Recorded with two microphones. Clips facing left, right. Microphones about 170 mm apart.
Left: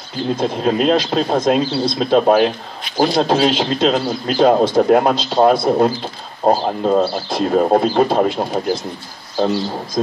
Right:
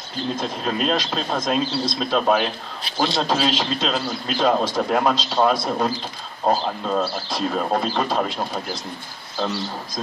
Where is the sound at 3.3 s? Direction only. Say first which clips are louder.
Left 6 dB; 60° left (ahead or behind).